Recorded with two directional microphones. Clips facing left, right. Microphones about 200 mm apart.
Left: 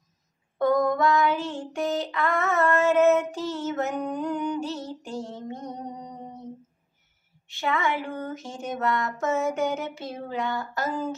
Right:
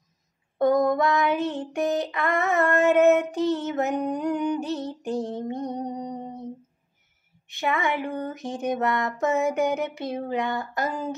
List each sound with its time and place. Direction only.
0.6 s child singing: 20° right (ahead or behind)
5.1 s mantra: 20° right (ahead or behind)
7.4 s a sound: 15° right (ahead or behind)